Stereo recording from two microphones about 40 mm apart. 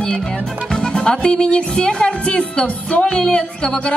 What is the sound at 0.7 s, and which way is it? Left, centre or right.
A woman's voice, centre.